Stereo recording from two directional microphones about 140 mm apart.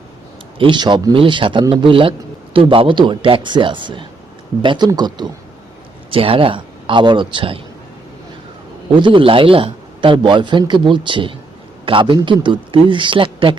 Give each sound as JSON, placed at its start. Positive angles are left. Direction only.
{"t": 0.6, "sound": "a man's voice", "side_deg": -35}
{"t": 6.1, "sound": "a man's voice", "side_deg": -40}
{"t": 9.0, "sound": "a man's voice", "side_deg": -35}